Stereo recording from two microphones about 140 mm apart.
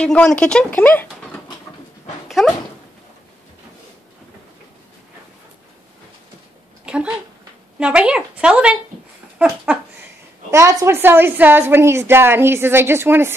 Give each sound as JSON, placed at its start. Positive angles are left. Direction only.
{"t": 0.0, "sound": "speech", "side_deg": 5}
{"t": 2.2, "sound": "dog", "side_deg": 0}
{"t": 7.8, "sound": "a woman's voice", "side_deg": -5}
{"t": 10.5, "sound": "a woman's voice", "side_deg": -20}